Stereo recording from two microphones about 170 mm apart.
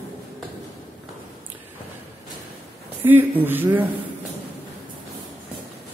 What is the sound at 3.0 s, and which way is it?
Speech, 10° right (ahead or behind).